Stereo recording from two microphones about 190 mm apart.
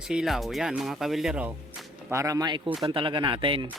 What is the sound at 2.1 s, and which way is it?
Speech, 15° right (ahead or behind).